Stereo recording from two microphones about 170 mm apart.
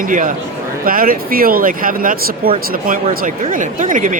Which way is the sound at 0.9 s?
55° right (ahead or behind).